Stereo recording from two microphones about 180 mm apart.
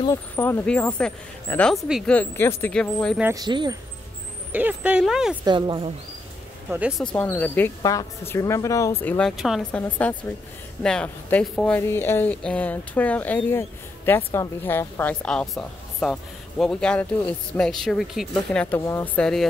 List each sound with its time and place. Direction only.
0.0 s speech: 15° left (ahead or behind)
3.3 s speech: 25° right (ahead or behind)
4.5 s speech: 10° right (ahead or behind)
5.4 s speech: 25° right (ahead or behind)
6.7 s speech: 5° right (ahead or behind)
7.3 s speech: 10° left (ahead or behind)
7.8 s speech: 20° left (ahead or behind)
9.4 s speech: centre (ahead or behind)
18.8 s speech: 15° left (ahead or behind)